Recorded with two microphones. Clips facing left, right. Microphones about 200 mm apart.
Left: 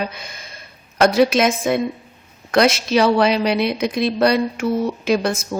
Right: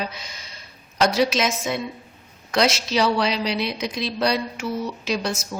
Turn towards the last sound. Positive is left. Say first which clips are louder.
# left 7 dB
turn(degrees=55)  # may be behind; listen again after turning